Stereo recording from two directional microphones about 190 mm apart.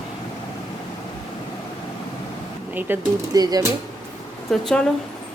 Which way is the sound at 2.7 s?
15° right (ahead or behind).